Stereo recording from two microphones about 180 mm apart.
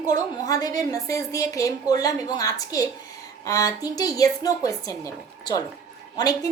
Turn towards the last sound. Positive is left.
turn(degrees=20)  # may be behind; listen again after turning